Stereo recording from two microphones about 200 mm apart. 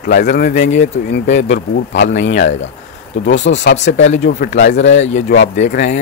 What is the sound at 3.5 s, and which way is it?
A man's voice, 60° left (ahead or behind).